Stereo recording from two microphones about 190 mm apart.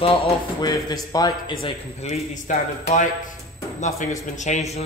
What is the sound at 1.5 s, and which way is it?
A man's voice, 30° left (ahead or behind).